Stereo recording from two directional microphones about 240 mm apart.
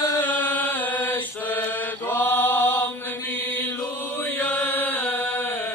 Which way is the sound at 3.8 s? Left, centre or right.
Centre.